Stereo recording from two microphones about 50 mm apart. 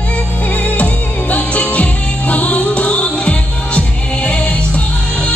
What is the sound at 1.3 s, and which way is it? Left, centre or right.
Music, left.